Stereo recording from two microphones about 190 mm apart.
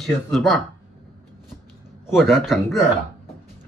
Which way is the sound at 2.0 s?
Centre (ahead or behind).